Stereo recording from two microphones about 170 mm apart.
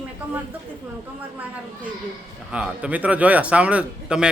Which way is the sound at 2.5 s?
5° right (ahead or behind).